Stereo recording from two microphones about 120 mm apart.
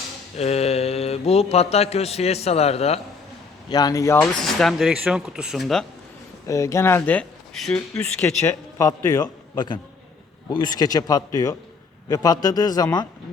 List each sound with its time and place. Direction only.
0.3 s speech: 60° left (ahead or behind)
3.7 s a man's voice: 35° left (ahead or behind)
4.2 s speech: 5° left (ahead or behind)
6.5 s speech: 25° left (ahead or behind); by 8.0 s 5° left (ahead or behind)
8.2 s a man's voice: 25° left (ahead or behind)
9.6 s speech: 40° left (ahead or behind)